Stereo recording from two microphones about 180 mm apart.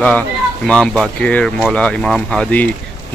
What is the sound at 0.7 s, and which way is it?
Speech, 5° left (ahead or behind).